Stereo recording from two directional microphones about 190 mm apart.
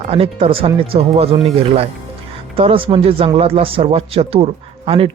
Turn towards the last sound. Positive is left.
turn(degrees=-30)  # may be behind; listen again after turning